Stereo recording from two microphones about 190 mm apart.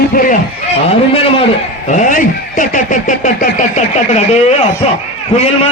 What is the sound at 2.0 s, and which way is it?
A man's voice, 45° left (ahead or behind).